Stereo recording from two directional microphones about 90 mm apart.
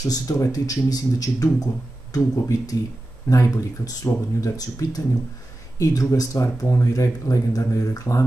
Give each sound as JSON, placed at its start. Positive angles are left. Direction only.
{"t": 0.0, "sound": "speech", "side_deg": 45}